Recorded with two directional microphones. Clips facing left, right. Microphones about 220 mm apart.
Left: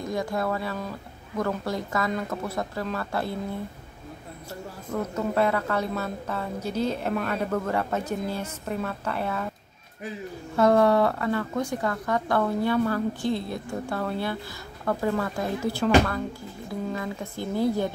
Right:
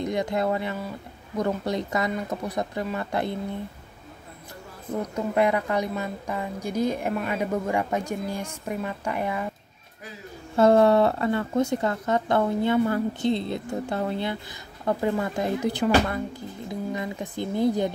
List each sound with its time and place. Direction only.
0.0 s speech: 20° right (ahead or behind)
5.0 s a woman's voice: 15° right (ahead or behind)
10.5 s speech: 25° right (ahead or behind)